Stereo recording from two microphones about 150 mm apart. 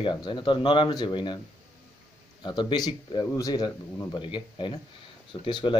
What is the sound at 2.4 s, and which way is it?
Speech, 30° left (ahead or behind).